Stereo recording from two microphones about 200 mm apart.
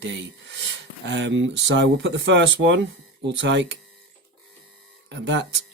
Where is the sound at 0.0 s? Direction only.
65° right (ahead or behind).